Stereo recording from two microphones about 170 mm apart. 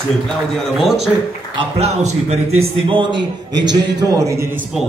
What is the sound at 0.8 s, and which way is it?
Speech, centre (ahead or behind).